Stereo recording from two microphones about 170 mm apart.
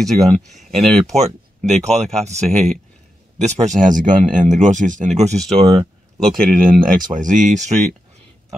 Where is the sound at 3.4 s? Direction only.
45° right (ahead or behind).